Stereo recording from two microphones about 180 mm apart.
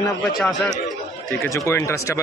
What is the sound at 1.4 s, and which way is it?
Speech, 15° left (ahead or behind).